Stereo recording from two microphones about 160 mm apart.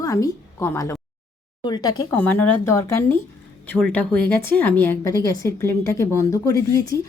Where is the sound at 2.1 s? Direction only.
10° left (ahead or behind).